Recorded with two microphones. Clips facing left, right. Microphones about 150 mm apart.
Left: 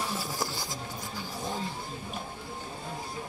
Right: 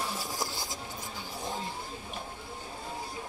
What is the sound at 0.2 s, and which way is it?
Music, 20° right (ahead or behind).